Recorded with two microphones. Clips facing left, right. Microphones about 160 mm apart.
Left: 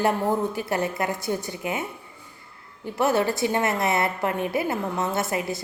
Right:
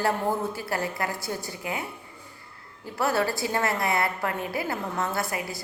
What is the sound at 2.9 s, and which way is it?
A woman's voice, 20° left (ahead or behind).